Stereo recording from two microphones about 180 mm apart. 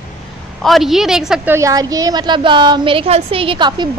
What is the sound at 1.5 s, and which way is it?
A woman's voice, 20° right (ahead or behind).